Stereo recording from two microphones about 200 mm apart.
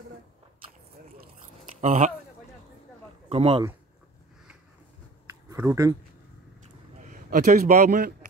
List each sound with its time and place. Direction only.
1.8 s speech: 35° right (ahead or behind)
3.3 s speech: 30° right (ahead or behind)
5.5 s speech: 15° right (ahead or behind)
7.1 s a man's voice: 40° right (ahead or behind)